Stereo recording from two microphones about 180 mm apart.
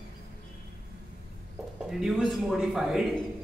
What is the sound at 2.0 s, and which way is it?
A man's voice, centre (ahead or behind).